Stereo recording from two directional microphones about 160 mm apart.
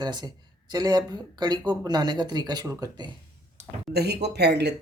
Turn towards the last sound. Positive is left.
turn(degrees=-90)